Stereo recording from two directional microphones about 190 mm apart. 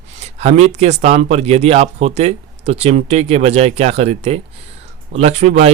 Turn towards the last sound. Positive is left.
turn(degrees=-35)  # may be behind; listen again after turning